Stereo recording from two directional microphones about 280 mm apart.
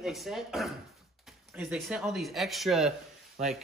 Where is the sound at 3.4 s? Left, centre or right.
Right.